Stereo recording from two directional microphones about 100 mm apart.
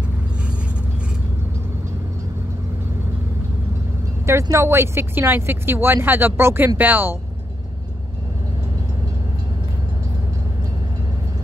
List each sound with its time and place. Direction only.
4.3 s speech: 30° right (ahead or behind)